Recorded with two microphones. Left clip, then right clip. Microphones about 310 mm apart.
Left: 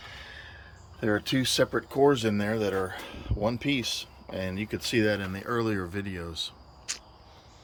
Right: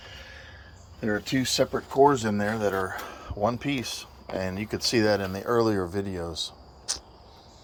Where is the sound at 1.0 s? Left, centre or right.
Centre.